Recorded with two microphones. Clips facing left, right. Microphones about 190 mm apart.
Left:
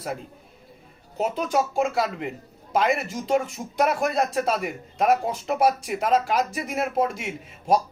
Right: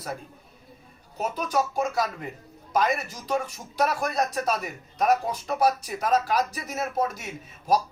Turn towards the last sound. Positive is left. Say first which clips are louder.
# left 2 dB
turn(degrees=25)  # may be behind; listen again after turning